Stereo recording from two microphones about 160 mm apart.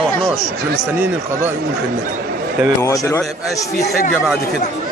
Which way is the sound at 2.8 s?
20° left (ahead or behind).